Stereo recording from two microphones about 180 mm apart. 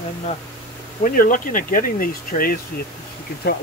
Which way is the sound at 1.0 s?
50° left (ahead or behind).